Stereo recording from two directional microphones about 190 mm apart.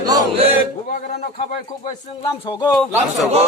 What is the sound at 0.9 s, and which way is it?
Speech, 50° left (ahead or behind).